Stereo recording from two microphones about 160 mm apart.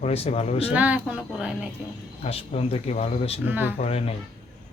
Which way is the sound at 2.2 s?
40° left (ahead or behind).